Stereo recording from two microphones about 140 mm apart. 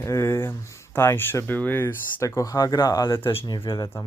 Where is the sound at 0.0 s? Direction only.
20° left (ahead or behind); by 3.8 s 35° left (ahead or behind).